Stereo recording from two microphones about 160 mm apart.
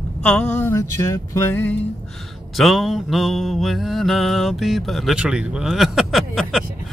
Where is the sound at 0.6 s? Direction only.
20° left (ahead or behind).